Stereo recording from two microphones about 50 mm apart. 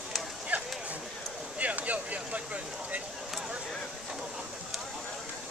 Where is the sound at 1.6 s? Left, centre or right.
Right.